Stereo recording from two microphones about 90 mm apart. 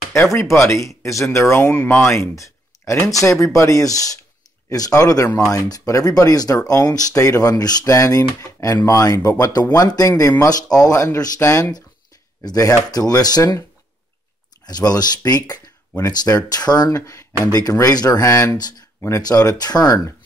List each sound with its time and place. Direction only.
0.1 s speech: 30° left (ahead or behind); by 13.6 s 45° left (ahead or behind)
14.7 s speech: 45° left (ahead or behind)
16.9 s speech: 35° left (ahead or behind)
19.2 s speech: 45° left (ahead or behind)